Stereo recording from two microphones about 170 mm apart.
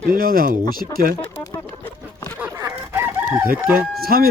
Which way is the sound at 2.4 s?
15° right (ahead or behind).